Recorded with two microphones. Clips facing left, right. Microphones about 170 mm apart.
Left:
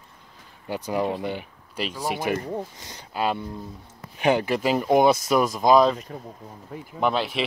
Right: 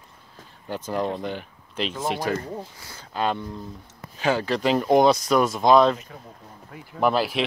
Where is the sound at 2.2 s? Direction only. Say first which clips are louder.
Left 1 dB; 20° left (ahead or behind).